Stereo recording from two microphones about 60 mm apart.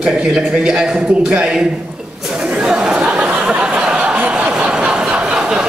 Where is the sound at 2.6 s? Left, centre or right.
Centre.